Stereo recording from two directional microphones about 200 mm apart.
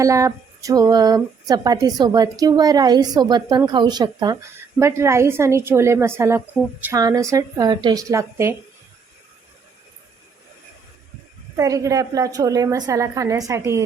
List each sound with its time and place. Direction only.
0.0 s a woman's voice: 15° right (ahead or behind)
11.5 s a woman's voice: 15° right (ahead or behind)